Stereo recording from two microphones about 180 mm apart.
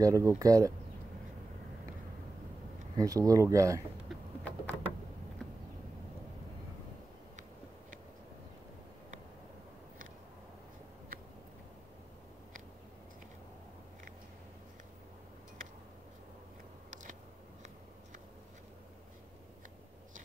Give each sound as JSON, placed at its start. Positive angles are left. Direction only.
{"t": 0.0, "sound": "speech", "side_deg": -20}
{"t": 3.0, "sound": "speech", "side_deg": -20}
{"t": 4.1, "sound": "vehicle", "side_deg": 10}